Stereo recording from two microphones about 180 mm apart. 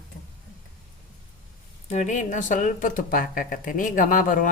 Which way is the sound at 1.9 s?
40° left (ahead or behind).